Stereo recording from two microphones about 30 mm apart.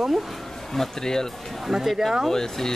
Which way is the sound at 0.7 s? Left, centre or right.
Centre.